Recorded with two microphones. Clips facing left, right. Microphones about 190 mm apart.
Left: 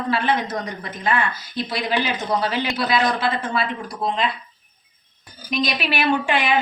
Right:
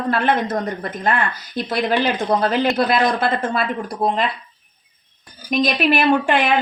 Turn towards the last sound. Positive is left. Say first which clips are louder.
# right 4 dB
turn(degrees=-50)  # may be behind; listen again after turning